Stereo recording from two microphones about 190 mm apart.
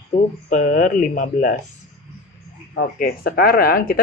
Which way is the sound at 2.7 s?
50° left (ahead or behind).